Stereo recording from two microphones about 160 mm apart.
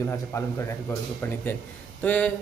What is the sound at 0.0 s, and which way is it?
A woman's voice, 15° left (ahead or behind).